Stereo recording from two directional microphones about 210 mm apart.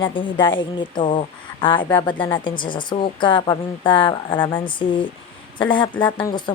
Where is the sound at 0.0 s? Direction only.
25° left (ahead or behind).